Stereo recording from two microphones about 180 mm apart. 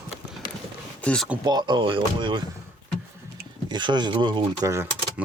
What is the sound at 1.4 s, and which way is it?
Speech, 20° right (ahead or behind).